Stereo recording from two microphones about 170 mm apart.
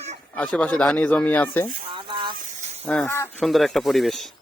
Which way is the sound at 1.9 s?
30° right (ahead or behind).